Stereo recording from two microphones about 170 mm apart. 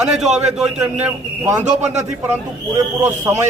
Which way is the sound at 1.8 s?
40° right (ahead or behind).